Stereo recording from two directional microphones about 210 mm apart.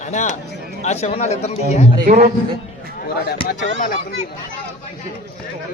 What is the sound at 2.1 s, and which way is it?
Speech, 35° right (ahead or behind).